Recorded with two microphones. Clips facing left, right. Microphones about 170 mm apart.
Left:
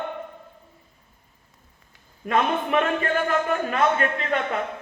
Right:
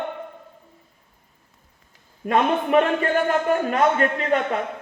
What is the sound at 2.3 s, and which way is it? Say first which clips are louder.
A man's voice: right 3 dB; 35° right (ahead or behind).